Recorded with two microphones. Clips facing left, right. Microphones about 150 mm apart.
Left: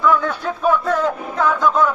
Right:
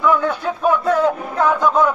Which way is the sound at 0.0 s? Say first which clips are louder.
Right 1 dB; 10° right (ahead or behind).